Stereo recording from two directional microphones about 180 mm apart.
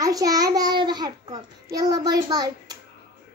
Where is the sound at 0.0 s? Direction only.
20° right (ahead or behind).